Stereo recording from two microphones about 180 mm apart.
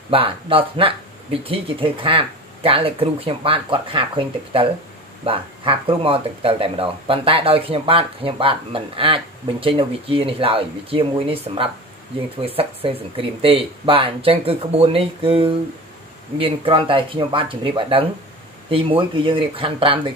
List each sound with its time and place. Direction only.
0.1 s speech: 30° right (ahead or behind)
5.2 s speech: 30° right (ahead or behind)